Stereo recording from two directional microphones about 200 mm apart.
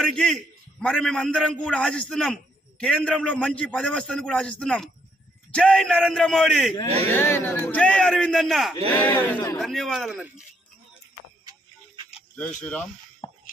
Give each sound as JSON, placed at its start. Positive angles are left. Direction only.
{"t": 0.0, "sound": "a man's voice", "side_deg": 0}
{"t": 7.1, "sound": "a man's voice", "side_deg": 10}
{"t": 8.9, "sound": "speech", "side_deg": 10}
{"t": 9.6, "sound": "a man's voice", "side_deg": 0}
{"t": 12.4, "sound": "a man's voice", "side_deg": 5}